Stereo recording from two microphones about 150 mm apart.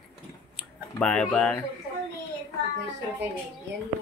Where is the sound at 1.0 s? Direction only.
5° left (ahead or behind).